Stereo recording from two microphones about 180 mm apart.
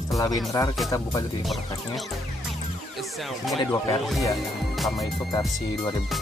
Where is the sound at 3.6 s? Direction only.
20° left (ahead or behind).